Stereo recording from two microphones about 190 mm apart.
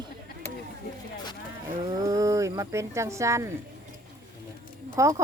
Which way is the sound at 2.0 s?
15° right (ahead or behind).